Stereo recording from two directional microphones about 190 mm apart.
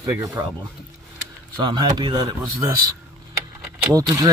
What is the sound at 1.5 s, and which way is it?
A man's voice, 20° right (ahead or behind).